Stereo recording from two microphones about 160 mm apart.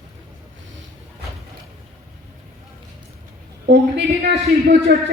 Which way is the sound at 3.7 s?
90° right.